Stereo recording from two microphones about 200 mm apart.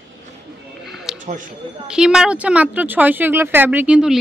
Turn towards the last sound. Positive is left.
turn(degrees=-5)  # may be behind; listen again after turning